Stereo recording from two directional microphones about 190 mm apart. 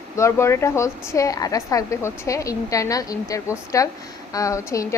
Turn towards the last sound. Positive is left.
turn(degrees=15)  # may be behind; listen again after turning